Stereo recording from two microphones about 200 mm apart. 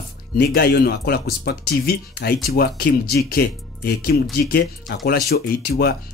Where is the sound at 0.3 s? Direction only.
50° left (ahead or behind).